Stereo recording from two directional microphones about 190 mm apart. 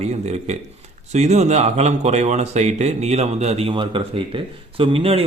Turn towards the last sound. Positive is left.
turn(degrees=-30)  # may be behind; listen again after turning